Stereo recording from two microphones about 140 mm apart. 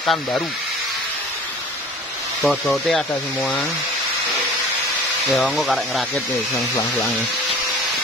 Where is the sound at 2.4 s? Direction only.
5° left (ahead or behind).